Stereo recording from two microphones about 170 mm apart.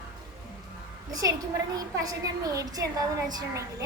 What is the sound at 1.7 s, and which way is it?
A child's voice, 20° right (ahead or behind).